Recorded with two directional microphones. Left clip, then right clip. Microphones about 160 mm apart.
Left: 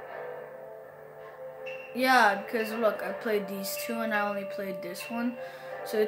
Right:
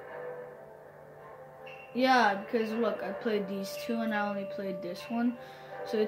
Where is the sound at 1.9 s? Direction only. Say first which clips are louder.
Left 3 dB; 20° left (ahead or behind).